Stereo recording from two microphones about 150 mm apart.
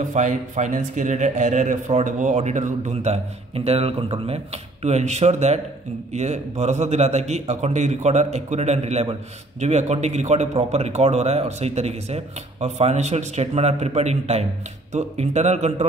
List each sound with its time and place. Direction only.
0.0 s a man's voice: 55° right (ahead or behind)